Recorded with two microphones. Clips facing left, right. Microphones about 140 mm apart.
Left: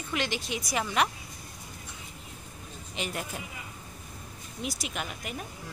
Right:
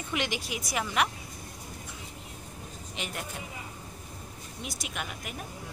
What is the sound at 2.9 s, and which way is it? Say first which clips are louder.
Speech: left 3 dB; centre (ahead or behind).